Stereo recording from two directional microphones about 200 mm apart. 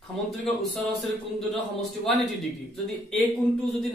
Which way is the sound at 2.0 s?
Centre (ahead or behind).